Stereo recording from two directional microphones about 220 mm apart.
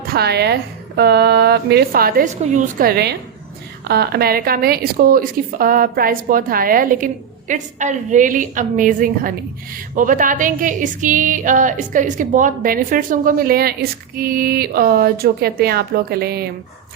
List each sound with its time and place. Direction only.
0.0 s a woman's voice: 45° right (ahead or behind)